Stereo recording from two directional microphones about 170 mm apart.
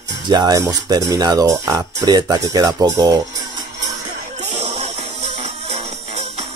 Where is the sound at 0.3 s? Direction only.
25° right (ahead or behind).